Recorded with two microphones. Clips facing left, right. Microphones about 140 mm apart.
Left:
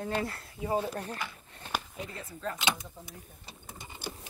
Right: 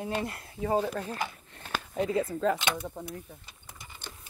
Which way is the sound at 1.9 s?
90° right.